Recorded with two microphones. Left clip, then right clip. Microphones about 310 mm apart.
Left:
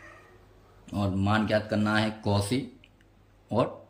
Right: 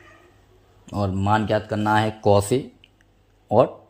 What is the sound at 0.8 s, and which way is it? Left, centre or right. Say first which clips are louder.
Speech: right 7 dB; centre.